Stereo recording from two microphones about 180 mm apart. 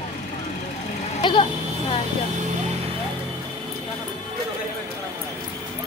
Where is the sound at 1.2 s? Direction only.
30° left (ahead or behind).